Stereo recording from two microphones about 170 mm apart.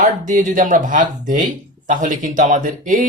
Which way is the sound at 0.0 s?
50° right (ahead or behind).